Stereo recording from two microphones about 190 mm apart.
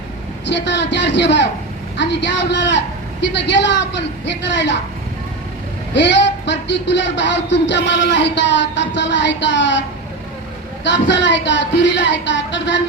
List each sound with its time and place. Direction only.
0.4 s speech: 70° left (ahead or behind)
5.9 s speech: 70° left (ahead or behind)
10.8 s speech: 70° left (ahead or behind)